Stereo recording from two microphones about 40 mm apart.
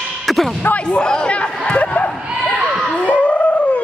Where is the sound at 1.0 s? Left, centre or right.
Left.